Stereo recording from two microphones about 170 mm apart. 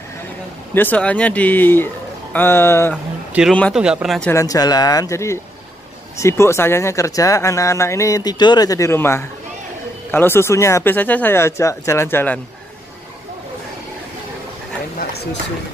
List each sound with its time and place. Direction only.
0.7 s speech: 10° left (ahead or behind)
3.3 s a man's voice: 10° right (ahead or behind)
4.3 s speech: 20° left (ahead or behind)